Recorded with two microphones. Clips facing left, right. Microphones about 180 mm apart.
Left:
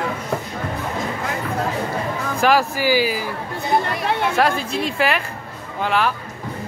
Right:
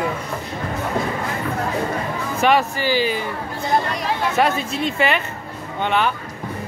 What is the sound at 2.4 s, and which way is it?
Speech, centre (ahead or behind).